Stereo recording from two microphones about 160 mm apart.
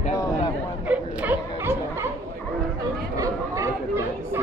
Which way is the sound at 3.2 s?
20° right (ahead or behind).